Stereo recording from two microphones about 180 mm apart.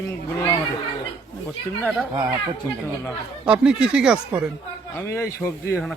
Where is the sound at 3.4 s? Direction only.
5° right (ahead or behind).